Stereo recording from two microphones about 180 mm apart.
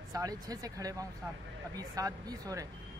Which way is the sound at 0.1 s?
20° right (ahead or behind).